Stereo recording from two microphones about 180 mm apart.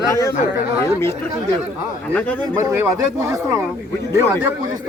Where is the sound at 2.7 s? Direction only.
15° right (ahead or behind).